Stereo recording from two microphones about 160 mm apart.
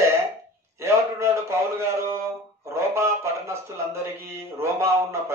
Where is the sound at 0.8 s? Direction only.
15° right (ahead or behind).